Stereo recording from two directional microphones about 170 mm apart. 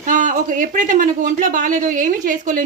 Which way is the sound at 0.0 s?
50° right (ahead or behind).